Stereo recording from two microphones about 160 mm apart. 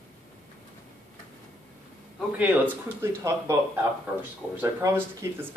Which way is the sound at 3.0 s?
15° right (ahead or behind).